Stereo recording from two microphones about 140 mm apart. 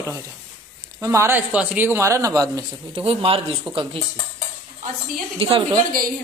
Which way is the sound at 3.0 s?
45° right (ahead or behind).